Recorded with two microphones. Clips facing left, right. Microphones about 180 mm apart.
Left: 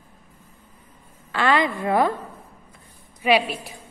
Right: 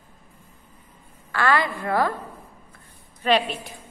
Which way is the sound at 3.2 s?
10° left (ahead or behind).